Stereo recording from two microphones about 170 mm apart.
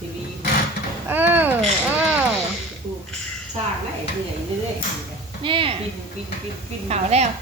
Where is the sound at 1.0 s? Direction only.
10° right (ahead or behind).